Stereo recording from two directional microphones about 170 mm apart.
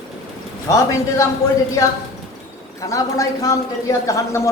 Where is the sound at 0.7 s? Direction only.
15° left (ahead or behind).